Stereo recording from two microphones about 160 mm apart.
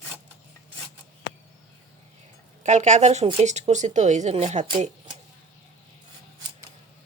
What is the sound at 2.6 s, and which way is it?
A woman's voice, 45° right (ahead or behind).